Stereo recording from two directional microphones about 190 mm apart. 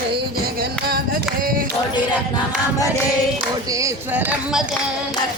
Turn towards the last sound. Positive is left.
turn(degrees=-10)  # may be behind; listen again after turning